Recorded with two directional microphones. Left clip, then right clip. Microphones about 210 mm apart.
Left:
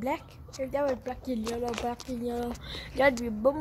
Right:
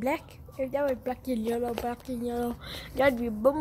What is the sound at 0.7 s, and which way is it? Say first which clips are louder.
Speech: even; centre (ahead or behind).